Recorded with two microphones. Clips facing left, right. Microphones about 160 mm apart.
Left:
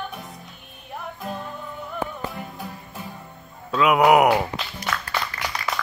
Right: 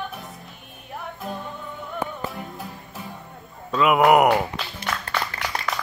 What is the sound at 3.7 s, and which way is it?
Music, centre (ahead or behind).